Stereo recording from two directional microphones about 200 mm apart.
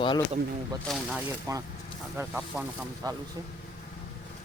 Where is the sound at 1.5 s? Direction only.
15° right (ahead or behind).